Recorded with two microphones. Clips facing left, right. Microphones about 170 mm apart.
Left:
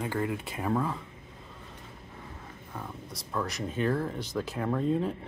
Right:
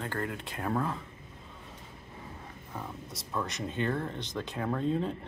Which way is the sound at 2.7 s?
Centre (ahead or behind).